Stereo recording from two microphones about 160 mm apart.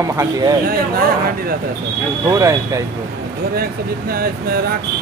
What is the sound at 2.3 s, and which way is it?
Speech, 20° right (ahead or behind).